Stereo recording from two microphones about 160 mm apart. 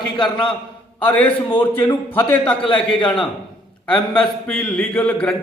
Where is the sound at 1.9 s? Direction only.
15° left (ahead or behind).